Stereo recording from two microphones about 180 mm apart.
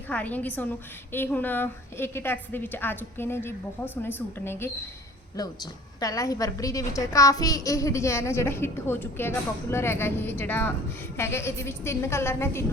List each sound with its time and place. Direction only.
0.1 s a woman's voice: 10° left (ahead or behind)